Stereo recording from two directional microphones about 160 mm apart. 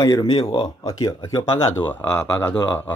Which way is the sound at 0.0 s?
25° left (ahead or behind).